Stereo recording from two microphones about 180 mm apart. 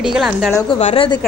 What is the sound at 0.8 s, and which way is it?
Speech, 30° left (ahead or behind).